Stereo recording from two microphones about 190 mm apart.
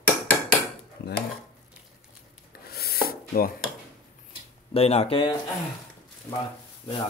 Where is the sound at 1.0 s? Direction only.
60° left (ahead or behind).